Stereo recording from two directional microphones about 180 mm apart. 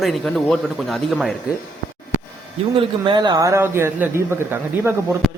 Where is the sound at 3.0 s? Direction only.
25° right (ahead or behind).